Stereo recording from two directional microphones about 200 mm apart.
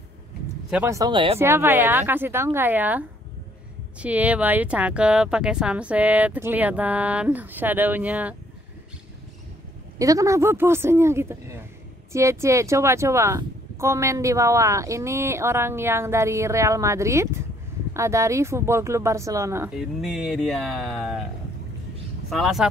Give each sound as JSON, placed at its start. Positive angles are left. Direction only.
{"t": 0.7, "sound": "speech", "side_deg": -5}
{"t": 0.9, "sound": "speech", "side_deg": -20}
{"t": 1.4, "sound": "speech", "side_deg": -10}
{"t": 9.9, "sound": "speech", "side_deg": -15}
{"t": 19.8, "sound": "speech", "side_deg": 0}
{"t": 22.3, "sound": "speech", "side_deg": 0}